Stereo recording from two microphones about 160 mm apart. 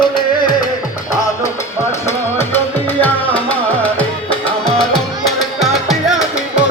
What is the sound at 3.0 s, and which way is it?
Music, 10° left (ahead or behind).